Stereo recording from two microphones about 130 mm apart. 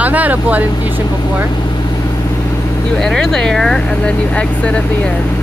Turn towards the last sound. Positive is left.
turn(degrees=10)  # may be behind; listen again after turning